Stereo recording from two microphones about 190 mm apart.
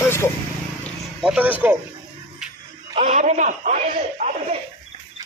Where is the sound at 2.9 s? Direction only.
40° right (ahead or behind).